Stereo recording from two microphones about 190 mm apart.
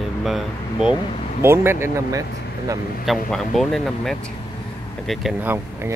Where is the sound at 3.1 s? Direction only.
Centre (ahead or behind).